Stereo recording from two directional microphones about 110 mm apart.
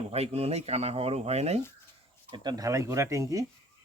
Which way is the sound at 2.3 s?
40° right (ahead or behind).